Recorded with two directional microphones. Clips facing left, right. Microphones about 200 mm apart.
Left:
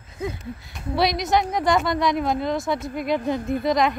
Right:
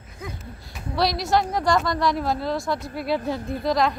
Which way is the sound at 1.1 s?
20° left (ahead or behind).